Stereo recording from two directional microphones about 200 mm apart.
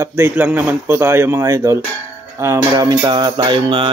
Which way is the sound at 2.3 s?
15° right (ahead or behind).